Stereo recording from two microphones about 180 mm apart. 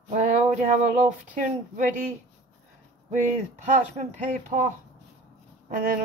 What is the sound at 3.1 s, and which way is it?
Speech, 40° right (ahead or behind).